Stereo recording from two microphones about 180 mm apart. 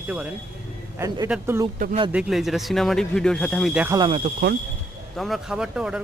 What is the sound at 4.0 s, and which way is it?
Speech, 30° right (ahead or behind).